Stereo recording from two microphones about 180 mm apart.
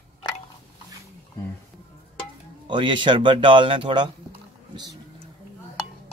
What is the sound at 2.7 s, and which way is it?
Speech, 25° right (ahead or behind).